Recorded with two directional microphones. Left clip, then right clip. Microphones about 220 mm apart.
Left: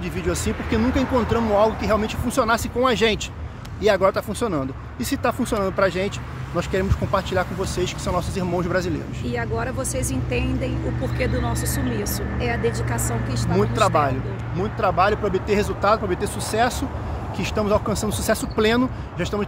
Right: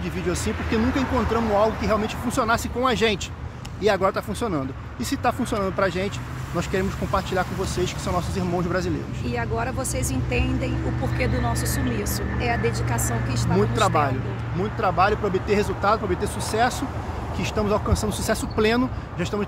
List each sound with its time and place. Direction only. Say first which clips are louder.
0.3 s speech: left 1 dB; 15° left (ahead or behind)
9.3 s speech: left 1 dB; 5° right (ahead or behind)
12.0 s speech: left 1 dB; 5° right (ahead or behind)
13.5 s speech: left 2 dB; 15° left (ahead or behind)